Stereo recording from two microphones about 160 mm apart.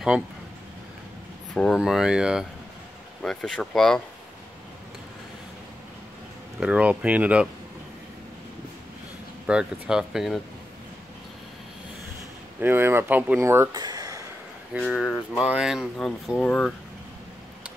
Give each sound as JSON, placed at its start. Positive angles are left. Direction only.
{"t": 1.5, "sound": "speech", "side_deg": 0}
{"t": 6.6, "sound": "speech", "side_deg": -10}
{"t": 9.5, "sound": "speech", "side_deg": -5}
{"t": 12.5, "sound": "speech", "side_deg": -15}
{"t": 14.8, "sound": "speech", "side_deg": 5}
{"t": 15.3, "sound": "speech", "side_deg": -5}